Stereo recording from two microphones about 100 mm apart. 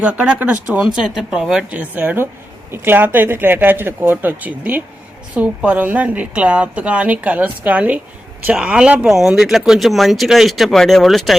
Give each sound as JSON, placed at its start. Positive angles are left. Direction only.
{"t": 0.0, "sound": "a woman's voice", "side_deg": -15}